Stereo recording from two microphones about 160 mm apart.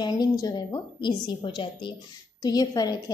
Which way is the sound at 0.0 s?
25° left (ahead or behind).